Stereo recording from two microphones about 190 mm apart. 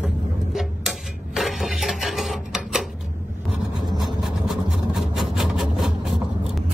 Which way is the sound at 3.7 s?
20° right (ahead or behind).